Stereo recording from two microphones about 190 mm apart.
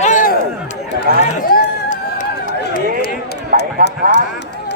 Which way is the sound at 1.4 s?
50° left (ahead or behind).